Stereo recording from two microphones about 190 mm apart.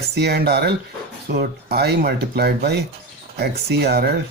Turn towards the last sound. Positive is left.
turn(degrees=-55)  # may be behind; listen again after turning